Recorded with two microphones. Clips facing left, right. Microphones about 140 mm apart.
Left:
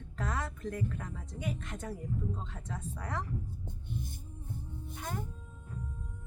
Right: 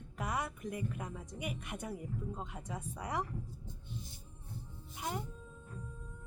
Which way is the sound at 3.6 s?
55° left (ahead or behind).